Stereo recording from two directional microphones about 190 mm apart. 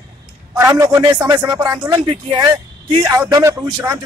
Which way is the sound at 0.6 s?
15° right (ahead or behind).